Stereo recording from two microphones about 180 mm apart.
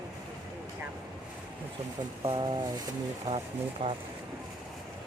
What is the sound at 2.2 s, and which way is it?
Speech, 25° right (ahead or behind).